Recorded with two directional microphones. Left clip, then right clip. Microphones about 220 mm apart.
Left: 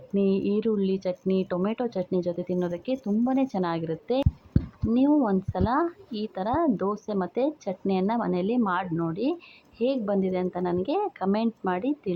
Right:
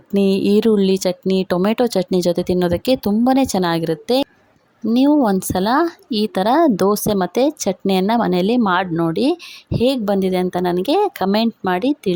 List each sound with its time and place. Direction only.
0.1 s speech: 55° right (ahead or behind)